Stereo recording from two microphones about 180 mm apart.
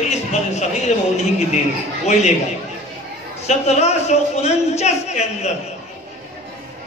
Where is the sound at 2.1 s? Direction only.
40° left (ahead or behind).